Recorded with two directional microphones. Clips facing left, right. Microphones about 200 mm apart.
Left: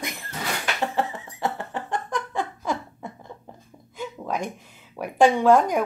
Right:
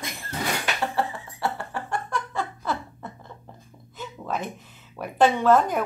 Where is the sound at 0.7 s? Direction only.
15° left (ahead or behind).